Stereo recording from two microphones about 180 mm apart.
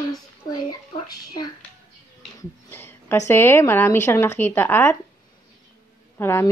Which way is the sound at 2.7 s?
10° left (ahead or behind).